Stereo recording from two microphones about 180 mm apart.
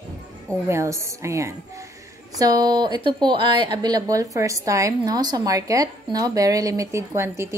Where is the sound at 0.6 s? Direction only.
15° right (ahead or behind).